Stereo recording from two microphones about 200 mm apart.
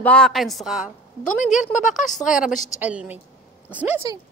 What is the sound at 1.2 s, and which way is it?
Speech, 40° left (ahead or behind).